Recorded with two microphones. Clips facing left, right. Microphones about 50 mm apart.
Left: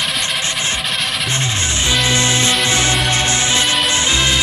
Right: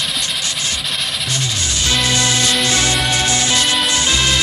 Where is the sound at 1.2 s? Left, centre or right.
Left.